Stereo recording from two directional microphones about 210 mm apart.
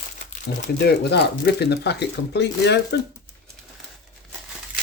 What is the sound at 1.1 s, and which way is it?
Speech, 50° left (ahead or behind).